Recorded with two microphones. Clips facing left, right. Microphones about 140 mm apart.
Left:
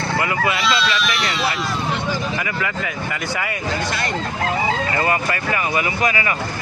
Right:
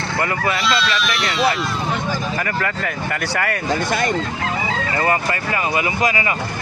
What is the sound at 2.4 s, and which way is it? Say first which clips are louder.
Speech: right 2 dB; 50° right (ahead or behind).